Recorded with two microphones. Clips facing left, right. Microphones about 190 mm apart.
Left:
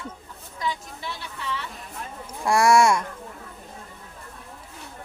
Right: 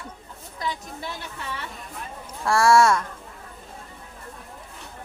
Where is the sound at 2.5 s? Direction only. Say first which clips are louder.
Even; 15° left (ahead or behind).